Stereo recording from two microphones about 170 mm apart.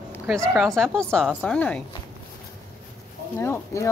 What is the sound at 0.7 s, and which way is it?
A woman's voice, centre (ahead or behind).